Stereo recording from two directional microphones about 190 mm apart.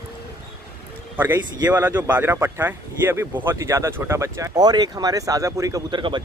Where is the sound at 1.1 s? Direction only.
10° right (ahead or behind).